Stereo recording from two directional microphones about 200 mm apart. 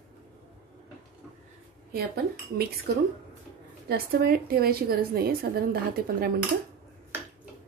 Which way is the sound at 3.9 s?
50° right (ahead or behind).